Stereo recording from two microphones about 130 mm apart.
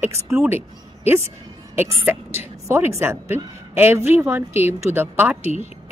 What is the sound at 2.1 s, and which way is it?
A woman's voice, 15° right (ahead or behind).